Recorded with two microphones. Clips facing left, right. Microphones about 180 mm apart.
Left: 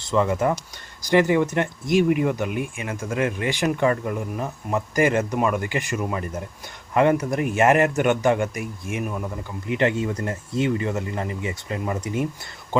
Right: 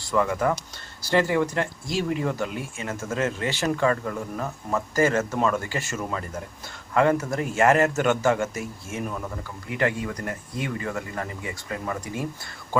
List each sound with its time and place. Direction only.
0.0 s speech: 20° left (ahead or behind)
9.6 s speech: 25° left (ahead or behind)